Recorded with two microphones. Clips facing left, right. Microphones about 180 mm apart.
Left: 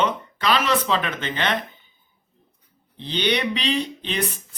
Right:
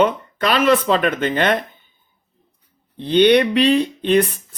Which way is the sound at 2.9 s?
55° right (ahead or behind).